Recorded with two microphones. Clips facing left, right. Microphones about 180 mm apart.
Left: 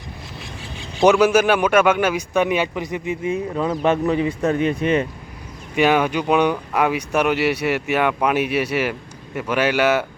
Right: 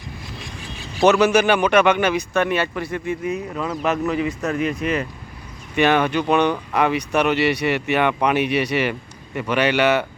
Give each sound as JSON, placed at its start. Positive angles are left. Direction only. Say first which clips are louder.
{"t": 1.1, "sound": "speech", "louder": "left 1 dB", "side_deg": 5}
{"t": 3.3, "sound": "speech", "louder": "left 4 dB", "side_deg": 30}
{"t": 5.7, "sound": "speech", "louder": "even", "side_deg": 10}